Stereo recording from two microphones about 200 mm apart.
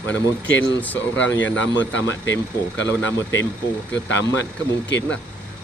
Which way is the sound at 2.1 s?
15° left (ahead or behind).